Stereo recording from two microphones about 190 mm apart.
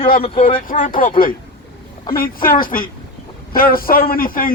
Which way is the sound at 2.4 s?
50° left (ahead or behind).